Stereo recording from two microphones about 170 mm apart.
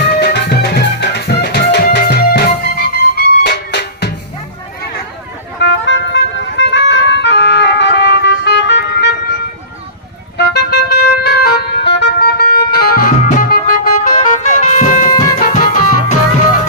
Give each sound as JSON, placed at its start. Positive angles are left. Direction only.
{"t": 0.1, "sound": "music", "side_deg": 70}
{"t": 3.4, "sound": "music", "side_deg": 75}
{"t": 5.5, "sound": "music", "side_deg": 90}
{"t": 10.3, "sound": "vehicle", "side_deg": 75}
{"t": 14.2, "sound": "music", "side_deg": 45}
{"t": 15.1, "sound": "music", "side_deg": 20}
{"t": 15.4, "sound": "music", "side_deg": 50}